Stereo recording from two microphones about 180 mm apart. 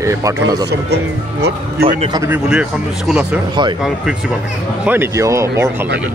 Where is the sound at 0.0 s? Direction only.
15° right (ahead or behind).